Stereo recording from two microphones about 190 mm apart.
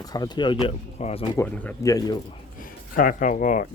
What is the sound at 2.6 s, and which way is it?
Speech, 45° left (ahead or behind).